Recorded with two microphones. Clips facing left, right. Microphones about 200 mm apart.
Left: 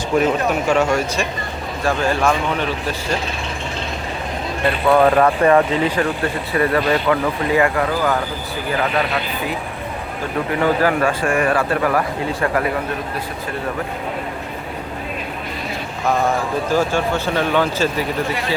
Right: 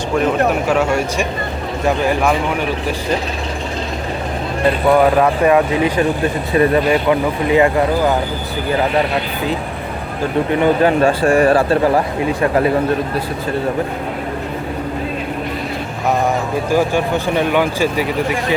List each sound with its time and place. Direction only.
0.7 s speech: 5° right (ahead or behind)
4.9 s speech: 10° right (ahead or behind)
10.5 s speech: 25° right (ahead or behind)
16.2 s speech: 15° right (ahead or behind)